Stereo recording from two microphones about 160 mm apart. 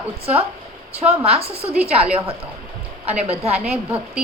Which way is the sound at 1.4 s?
15° left (ahead or behind).